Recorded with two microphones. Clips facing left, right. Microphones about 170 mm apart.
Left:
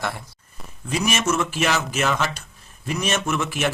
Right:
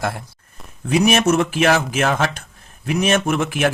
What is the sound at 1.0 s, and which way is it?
Speech, 60° right (ahead or behind).